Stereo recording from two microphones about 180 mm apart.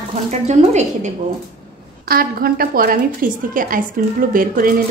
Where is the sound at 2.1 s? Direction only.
55° right (ahead or behind).